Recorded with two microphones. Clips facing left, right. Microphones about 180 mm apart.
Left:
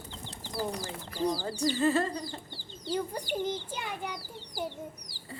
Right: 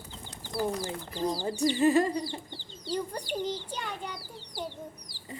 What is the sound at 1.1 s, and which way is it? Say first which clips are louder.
Speech: left 1 dB; 20° right (ahead or behind).